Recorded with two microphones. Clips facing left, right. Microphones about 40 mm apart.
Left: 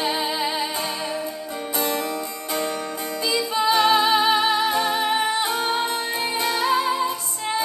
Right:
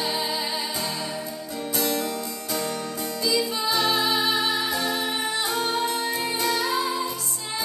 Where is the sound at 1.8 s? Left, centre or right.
Left.